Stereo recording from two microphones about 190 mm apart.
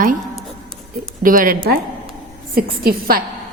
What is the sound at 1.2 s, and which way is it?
A woman's voice, 45° right (ahead or behind).